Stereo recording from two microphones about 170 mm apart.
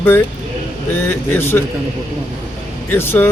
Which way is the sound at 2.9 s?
15° left (ahead or behind).